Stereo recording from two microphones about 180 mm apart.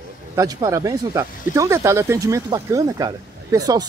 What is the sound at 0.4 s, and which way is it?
Speech, 20° right (ahead or behind).